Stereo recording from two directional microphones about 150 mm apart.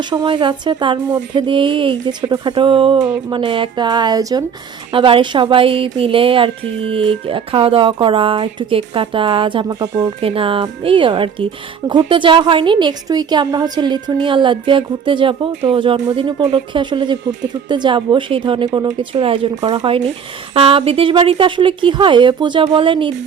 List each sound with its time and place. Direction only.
0.1 s a woman's voice: 30° right (ahead or behind)
4.9 s a woman's voice: 35° right (ahead or behind)